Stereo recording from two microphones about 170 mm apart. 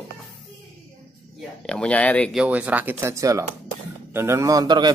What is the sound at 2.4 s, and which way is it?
Speech, 10° right (ahead or behind).